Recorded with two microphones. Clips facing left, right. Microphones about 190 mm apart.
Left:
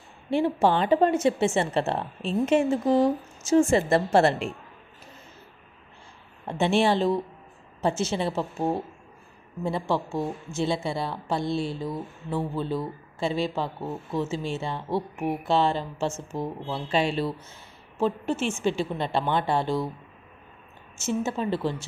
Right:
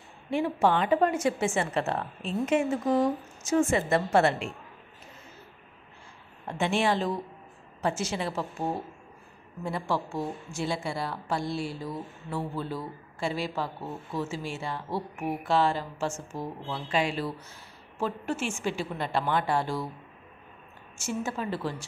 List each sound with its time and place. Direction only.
0.3 s a woman's voice: 30° left (ahead or behind)
6.4 s a woman's voice: 30° left (ahead or behind)
21.0 s a woman's voice: 25° left (ahead or behind)